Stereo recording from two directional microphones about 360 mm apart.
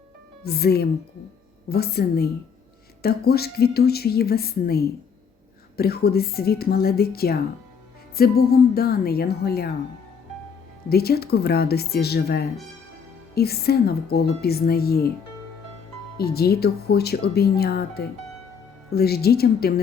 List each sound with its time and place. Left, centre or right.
0.4 s a woman's voice: left
10.8 s a woman's voice: left
16.1 s a woman's voice: left